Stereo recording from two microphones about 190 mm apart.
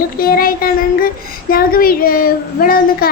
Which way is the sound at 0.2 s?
50° left (ahead or behind).